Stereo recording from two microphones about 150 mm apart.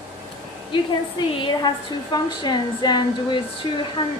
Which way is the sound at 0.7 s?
35° left (ahead or behind).